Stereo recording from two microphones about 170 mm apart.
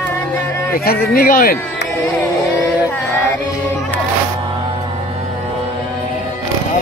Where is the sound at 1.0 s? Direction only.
60° left (ahead or behind).